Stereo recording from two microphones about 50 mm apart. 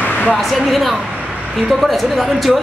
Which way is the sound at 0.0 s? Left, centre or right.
Left.